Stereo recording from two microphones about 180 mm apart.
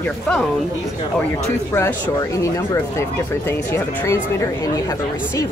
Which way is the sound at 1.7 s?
15° left (ahead or behind).